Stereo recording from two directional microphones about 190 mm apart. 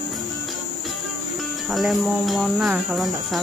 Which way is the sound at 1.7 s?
Centre (ahead or behind).